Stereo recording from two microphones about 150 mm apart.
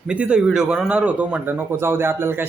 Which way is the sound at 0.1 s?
5° right (ahead or behind).